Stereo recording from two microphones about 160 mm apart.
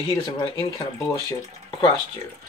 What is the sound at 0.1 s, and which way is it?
Speech, 20° left (ahead or behind).